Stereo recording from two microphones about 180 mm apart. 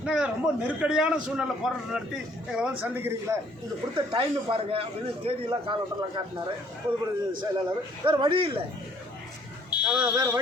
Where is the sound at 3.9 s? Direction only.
25° right (ahead or behind).